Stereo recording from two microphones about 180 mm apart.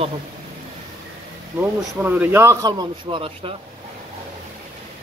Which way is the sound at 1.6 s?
10° right (ahead or behind).